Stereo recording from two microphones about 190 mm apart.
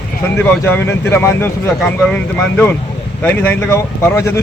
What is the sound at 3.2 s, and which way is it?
Speech, 10° left (ahead or behind).